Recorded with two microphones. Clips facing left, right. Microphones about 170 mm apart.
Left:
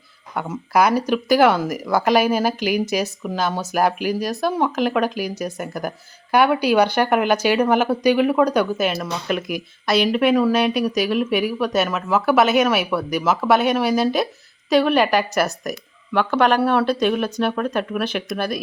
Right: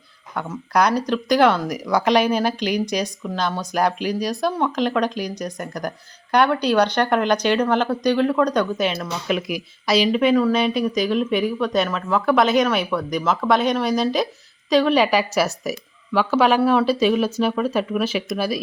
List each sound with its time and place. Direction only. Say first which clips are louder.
0.3 s speech: left 2 dB; 5° left (ahead or behind)